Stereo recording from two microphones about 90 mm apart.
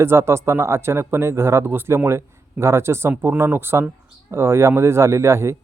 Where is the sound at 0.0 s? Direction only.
30° right (ahead or behind).